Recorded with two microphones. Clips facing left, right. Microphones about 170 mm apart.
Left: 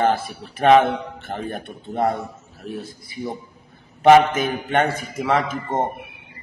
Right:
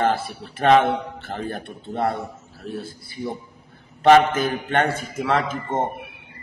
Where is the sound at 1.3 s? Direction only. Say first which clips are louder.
Left 1 dB; 20° left (ahead or behind).